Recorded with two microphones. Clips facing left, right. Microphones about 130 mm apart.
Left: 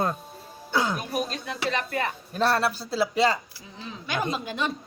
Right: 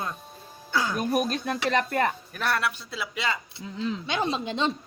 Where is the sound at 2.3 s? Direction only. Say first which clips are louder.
Left 4 dB; 30° left (ahead or behind).